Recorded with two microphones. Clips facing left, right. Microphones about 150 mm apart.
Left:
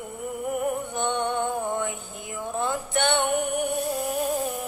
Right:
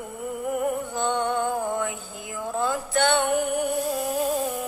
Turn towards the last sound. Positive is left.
turn(degrees=-20)  # may be behind; listen again after turning